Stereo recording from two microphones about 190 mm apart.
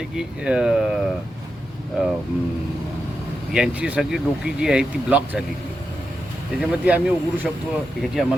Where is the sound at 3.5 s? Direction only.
5° right (ahead or behind).